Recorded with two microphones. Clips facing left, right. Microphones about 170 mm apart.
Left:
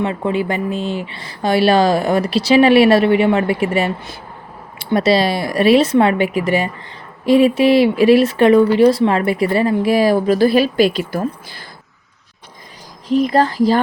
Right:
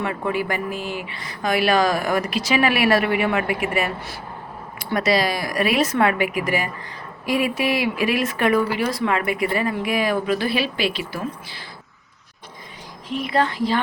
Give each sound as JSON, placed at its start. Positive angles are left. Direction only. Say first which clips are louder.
{"t": 0.0, "sound": "speech", "louder": "left 5 dB", "side_deg": 25}
{"t": 13.1, "sound": "speech", "louder": "left 7 dB", "side_deg": 40}